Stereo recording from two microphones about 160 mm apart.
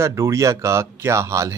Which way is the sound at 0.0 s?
15° right (ahead or behind).